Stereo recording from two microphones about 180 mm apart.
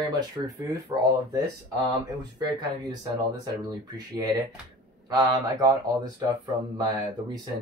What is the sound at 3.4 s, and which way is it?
Speech, 20° right (ahead or behind).